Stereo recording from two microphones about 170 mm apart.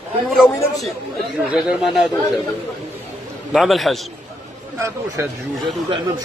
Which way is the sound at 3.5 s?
Centre (ahead or behind).